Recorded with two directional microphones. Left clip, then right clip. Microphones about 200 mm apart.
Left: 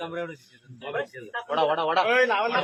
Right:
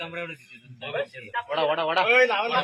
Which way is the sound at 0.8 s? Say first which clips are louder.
Right 1 dB; 50° left (ahead or behind).